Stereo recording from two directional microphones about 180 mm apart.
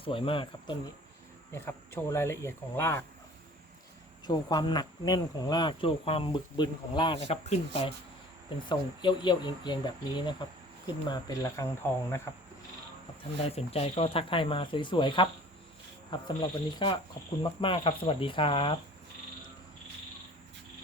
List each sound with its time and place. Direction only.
0.0 s speech: 30° left (ahead or behind)
1.5 s speech: 10° left (ahead or behind)
4.3 s speech: 25° left (ahead or behind)
13.6 s speech: 35° left (ahead or behind)